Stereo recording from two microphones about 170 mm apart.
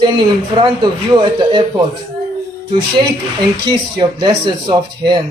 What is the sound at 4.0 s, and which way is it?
Speech, 30° right (ahead or behind).